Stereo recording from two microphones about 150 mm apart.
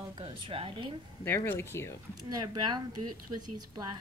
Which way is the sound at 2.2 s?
25° right (ahead or behind).